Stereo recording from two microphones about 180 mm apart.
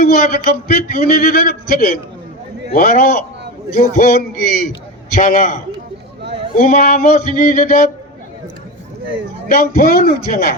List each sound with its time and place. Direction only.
0.0 s a man's voice: 55° left (ahead or behind)
6.6 s a man's voice: 50° left (ahead or behind)
9.5 s a man's voice: 50° left (ahead or behind)